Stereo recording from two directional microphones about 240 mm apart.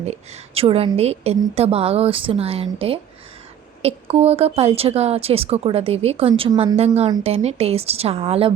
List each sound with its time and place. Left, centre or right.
0.0 s a woman's voice: right